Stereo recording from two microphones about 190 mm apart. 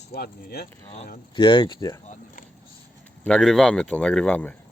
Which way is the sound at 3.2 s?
Centre (ahead or behind).